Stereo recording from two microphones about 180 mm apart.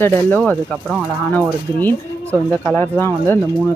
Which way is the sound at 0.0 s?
10° left (ahead or behind).